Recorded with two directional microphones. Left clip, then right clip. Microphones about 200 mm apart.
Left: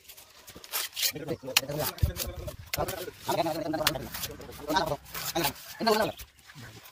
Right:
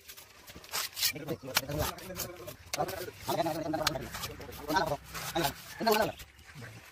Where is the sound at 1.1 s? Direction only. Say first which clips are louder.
Left 2 dB; 25° left (ahead or behind).